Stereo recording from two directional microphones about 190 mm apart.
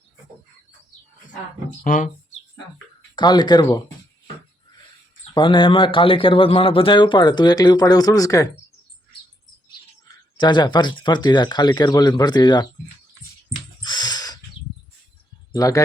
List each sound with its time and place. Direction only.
1.8 s speech: 40° left (ahead or behind)
3.2 s speech: 20° left (ahead or behind)
5.3 s speech: 25° left (ahead or behind)
10.3 s speech: 25° left (ahead or behind)
13.8 s a sound: 20° left (ahead or behind)
15.5 s speech: 15° left (ahead or behind)